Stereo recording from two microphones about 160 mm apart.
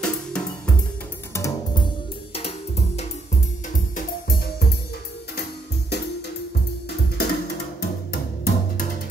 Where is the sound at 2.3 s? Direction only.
40° left (ahead or behind).